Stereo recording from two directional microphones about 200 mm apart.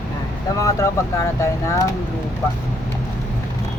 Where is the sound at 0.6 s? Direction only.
15° left (ahead or behind).